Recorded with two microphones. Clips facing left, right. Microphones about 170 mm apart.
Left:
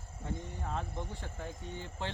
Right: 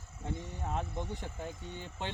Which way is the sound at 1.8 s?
20° right (ahead or behind).